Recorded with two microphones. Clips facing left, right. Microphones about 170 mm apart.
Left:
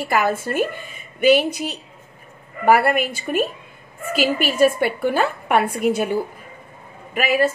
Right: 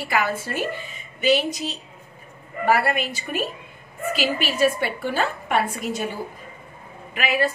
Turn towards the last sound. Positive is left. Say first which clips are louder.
# left 4 dB
turn(degrees=45)  # may be behind; listen again after turning